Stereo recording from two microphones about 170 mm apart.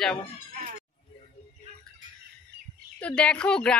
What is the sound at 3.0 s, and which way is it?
Speech, 5° left (ahead or behind).